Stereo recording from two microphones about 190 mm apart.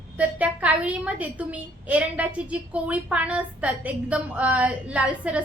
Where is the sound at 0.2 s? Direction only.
5° right (ahead or behind).